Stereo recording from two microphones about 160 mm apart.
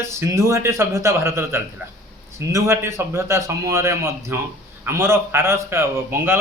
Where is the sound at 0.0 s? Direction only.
15° right (ahead or behind).